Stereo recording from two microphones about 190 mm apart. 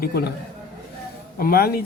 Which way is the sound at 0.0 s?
55° left (ahead or behind).